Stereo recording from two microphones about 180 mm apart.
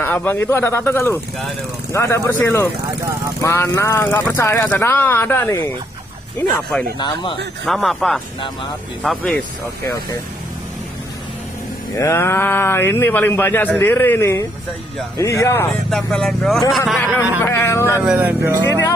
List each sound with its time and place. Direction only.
0.0 s speech: 10° left (ahead or behind)
7.0 s a man's voice: 25° left (ahead or behind)
7.6 s speech: centre (ahead or behind)
11.9 s speech: 15° left (ahead or behind)
15.9 s speech: centre (ahead or behind)
17.4 s speech: 15° left (ahead or behind)
18.0 s speech: 10° right (ahead or behind)